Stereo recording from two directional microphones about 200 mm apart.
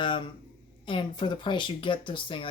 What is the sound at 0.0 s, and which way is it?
Speech, 25° left (ahead or behind).